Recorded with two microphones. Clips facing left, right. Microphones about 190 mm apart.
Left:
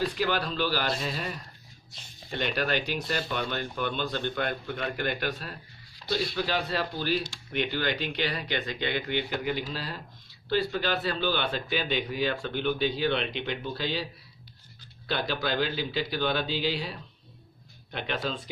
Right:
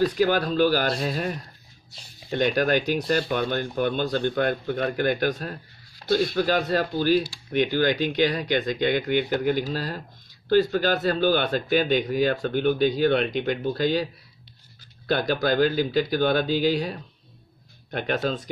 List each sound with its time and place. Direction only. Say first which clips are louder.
0.0 s speech: right 7 dB; 45° right (ahead or behind)
15.0 s speech: right 7 dB; 45° right (ahead or behind)